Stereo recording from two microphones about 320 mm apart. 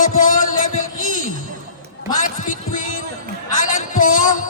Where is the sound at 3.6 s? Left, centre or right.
Left.